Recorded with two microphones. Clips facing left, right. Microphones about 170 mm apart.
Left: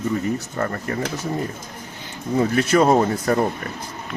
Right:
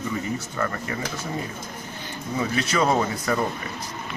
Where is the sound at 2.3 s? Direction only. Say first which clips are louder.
Left 7 dB; 50° left (ahead or behind).